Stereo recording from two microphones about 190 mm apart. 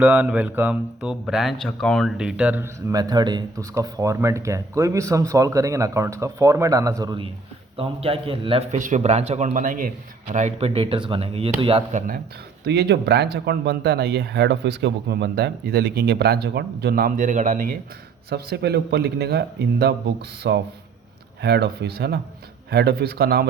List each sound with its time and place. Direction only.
0.0 s speech: 5° right (ahead or behind)
2.9 s a man's voice: 20° right (ahead or behind)
11.9 s speech: 45° right (ahead or behind)
12.6 s speech: 60° right (ahead or behind); by 17.7 s 45° right (ahead or behind)
18.3 s speech: 60° right (ahead or behind)